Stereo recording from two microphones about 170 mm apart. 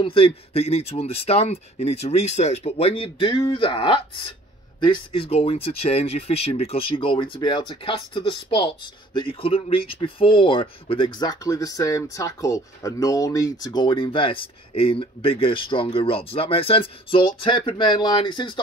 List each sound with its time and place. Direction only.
0.0 s speech: 35° left (ahead or behind)